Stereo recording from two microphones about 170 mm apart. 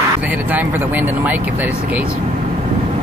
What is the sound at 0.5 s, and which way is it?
Speech, 10° right (ahead or behind).